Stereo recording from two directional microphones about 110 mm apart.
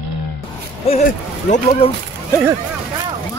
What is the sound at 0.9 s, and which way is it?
Speech, 60° left (ahead or behind).